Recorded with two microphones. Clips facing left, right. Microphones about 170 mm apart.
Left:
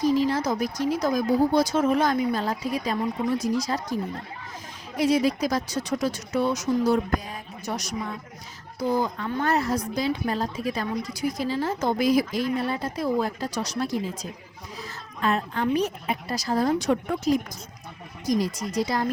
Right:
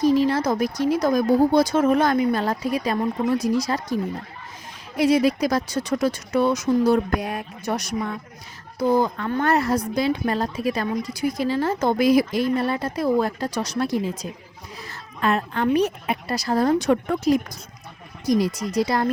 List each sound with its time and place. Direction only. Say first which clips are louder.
0.0 s a woman's voice: right 4 dB; 65° right (ahead or behind)